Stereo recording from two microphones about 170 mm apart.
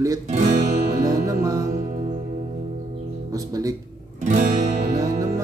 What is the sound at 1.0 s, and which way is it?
Music, 20° right (ahead or behind).